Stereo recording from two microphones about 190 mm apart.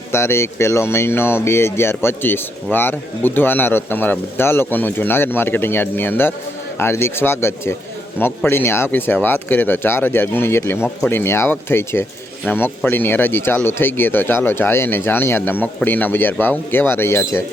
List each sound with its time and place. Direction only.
0.1 s speech: 15° left (ahead or behind)